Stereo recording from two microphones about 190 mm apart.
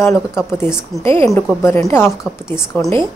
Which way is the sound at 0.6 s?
5° right (ahead or behind).